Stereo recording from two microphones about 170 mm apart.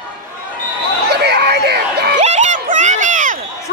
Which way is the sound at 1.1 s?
75° right (ahead or behind).